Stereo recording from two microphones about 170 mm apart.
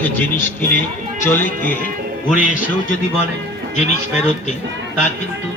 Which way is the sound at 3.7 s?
40° left (ahead or behind).